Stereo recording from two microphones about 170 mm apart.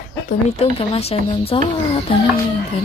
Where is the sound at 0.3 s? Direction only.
35° left (ahead or behind).